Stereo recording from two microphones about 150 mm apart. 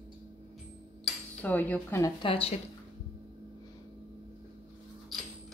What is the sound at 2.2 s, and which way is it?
Speech, 40° left (ahead or behind).